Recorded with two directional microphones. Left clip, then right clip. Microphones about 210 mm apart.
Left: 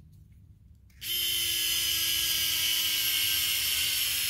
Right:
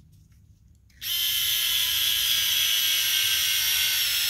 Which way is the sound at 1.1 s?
20° right (ahead or behind).